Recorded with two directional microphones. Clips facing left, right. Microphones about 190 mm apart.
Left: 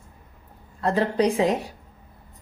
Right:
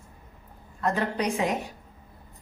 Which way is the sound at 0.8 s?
30° left (ahead or behind).